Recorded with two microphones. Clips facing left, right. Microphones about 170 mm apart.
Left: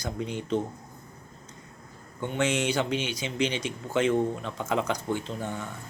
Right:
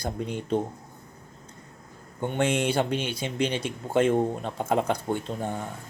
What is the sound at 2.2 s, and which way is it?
Speech, 50° right (ahead or behind).